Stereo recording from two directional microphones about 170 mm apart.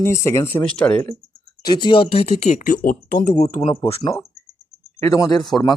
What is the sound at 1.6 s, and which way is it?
Speech, 25° left (ahead or behind).